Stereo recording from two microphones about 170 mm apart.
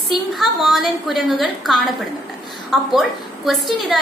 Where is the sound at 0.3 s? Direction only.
Centre (ahead or behind).